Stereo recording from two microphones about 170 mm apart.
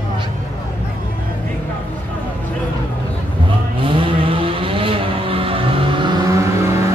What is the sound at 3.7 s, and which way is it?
Vehicle, 30° right (ahead or behind).